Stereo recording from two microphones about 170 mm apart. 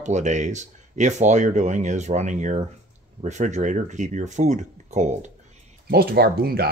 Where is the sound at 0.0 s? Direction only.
45° right (ahead or behind).